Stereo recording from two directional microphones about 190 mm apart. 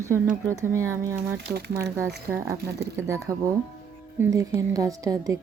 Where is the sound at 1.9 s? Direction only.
15° right (ahead or behind).